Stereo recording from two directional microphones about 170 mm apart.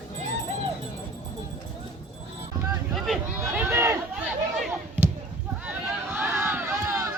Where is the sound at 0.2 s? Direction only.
45° right (ahead or behind).